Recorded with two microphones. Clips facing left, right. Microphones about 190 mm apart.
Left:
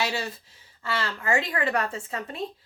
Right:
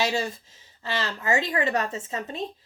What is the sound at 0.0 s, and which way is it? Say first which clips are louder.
Speech: right 3 dB; 20° right (ahead or behind).